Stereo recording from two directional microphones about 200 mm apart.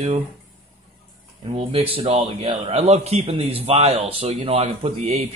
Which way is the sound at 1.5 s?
30° right (ahead or behind).